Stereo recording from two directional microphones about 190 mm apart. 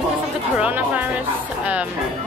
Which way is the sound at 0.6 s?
10° right (ahead or behind).